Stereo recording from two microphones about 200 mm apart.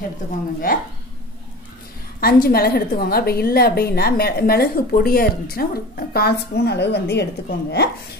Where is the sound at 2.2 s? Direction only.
50° left (ahead or behind).